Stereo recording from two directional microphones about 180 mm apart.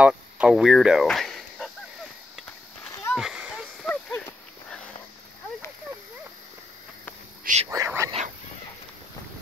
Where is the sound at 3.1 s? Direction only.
5° right (ahead or behind).